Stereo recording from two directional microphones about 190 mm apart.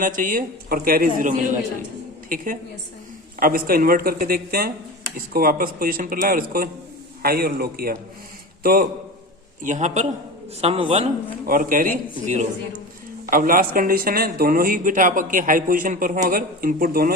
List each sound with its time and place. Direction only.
0.0 s a man's voice: 45° right (ahead or behind); by 11.0 s 30° right (ahead or behind)
11.4 s speech: 45° right (ahead or behind)